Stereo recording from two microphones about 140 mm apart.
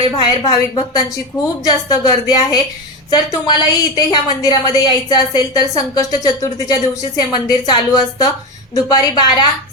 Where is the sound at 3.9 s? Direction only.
30° left (ahead or behind).